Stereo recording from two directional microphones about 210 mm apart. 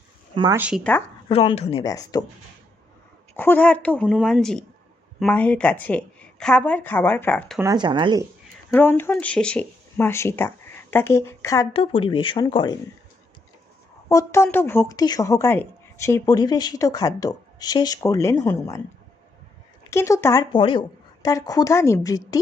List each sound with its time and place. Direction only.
0.3 s speech: 20° right (ahead or behind)
0.9 s a woman's voice: 5° left (ahead or behind)
1.3 s speech: 30° left (ahead or behind)
1.8 s a woman's voice: 20° left (ahead or behind)
3.3 s a woman's voice: 10° left (ahead or behind)
7.6 s speech: 20° right (ahead or behind)
8.7 s speech: 10° left (ahead or behind)
11.7 s speech: 25° left (ahead or behind)
14.1 s a woman's voice: 15° left (ahead or behind)
19.9 s a woman's voice: 15° left (ahead or behind)